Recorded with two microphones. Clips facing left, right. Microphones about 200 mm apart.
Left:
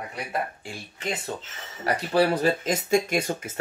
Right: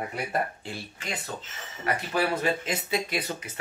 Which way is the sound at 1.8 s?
35° left (ahead or behind).